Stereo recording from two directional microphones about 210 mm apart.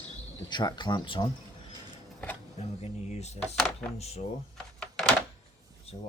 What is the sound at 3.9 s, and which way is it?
Speech, 30° left (ahead or behind).